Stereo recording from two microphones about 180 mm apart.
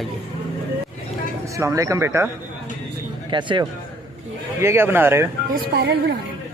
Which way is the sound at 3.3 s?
25° right (ahead or behind).